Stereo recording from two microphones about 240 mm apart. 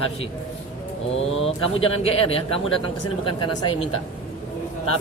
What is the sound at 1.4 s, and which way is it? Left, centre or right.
Speech, left.